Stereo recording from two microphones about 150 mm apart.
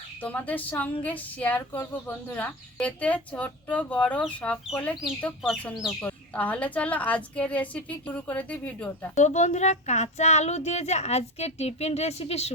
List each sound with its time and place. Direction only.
0.2 s a woman's voice: 10° left (ahead or behind)
6.0 s a woman's voice: 10° left (ahead or behind)
9.1 s speech: 55° left (ahead or behind)